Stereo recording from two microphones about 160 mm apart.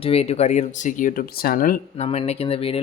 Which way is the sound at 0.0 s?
40° left (ahead or behind).